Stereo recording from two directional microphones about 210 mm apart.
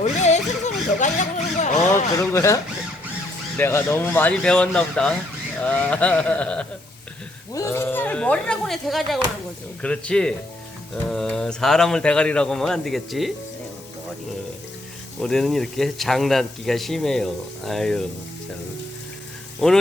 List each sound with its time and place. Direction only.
0.0 s a sound: 35° left (ahead or behind)
2.1 s speech: 15° left (ahead or behind)
3.6 s speech: 10° left (ahead or behind)
15.2 s speech: centre (ahead or behind)
19.5 s speech: centre (ahead or behind)